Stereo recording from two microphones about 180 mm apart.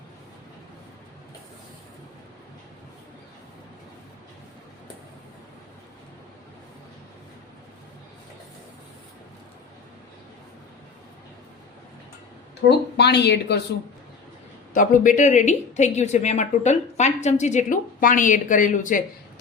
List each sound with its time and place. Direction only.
12.6 s speech: 70° left (ahead or behind)
14.7 s speech: 45° left (ahead or behind)